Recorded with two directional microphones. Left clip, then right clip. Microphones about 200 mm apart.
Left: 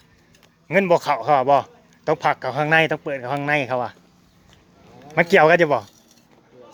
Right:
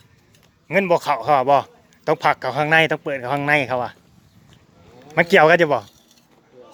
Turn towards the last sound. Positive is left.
turn(degrees=-10)  # may be behind; listen again after turning